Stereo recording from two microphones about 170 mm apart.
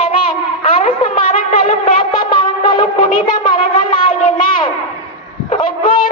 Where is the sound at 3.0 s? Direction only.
55° left (ahead or behind).